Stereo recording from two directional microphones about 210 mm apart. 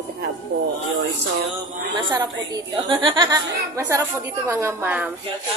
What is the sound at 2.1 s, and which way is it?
A woman's voice, 20° right (ahead or behind).